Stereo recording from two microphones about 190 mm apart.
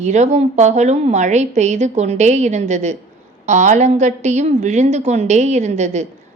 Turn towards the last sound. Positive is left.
turn(degrees=-35)  # may be behind; listen again after turning